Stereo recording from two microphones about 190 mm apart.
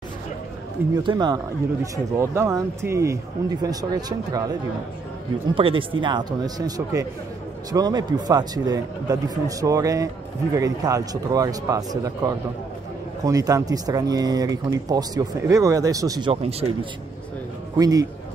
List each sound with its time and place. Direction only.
0.9 s speech: 20° right (ahead or behind)
5.5 s speech: 25° right (ahead or behind)
13.2 s speech: 20° right (ahead or behind)
17.7 s speech: 20° right (ahead or behind)